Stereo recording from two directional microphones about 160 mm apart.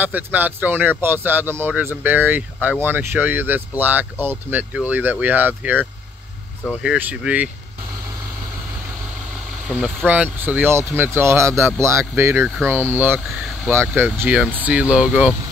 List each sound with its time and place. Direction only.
0.0 s speech: 10° right (ahead or behind)
9.7 s speech: 5° right (ahead or behind)